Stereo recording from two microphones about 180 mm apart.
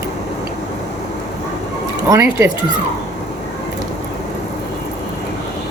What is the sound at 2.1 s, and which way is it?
Speech, 15° right (ahead or behind).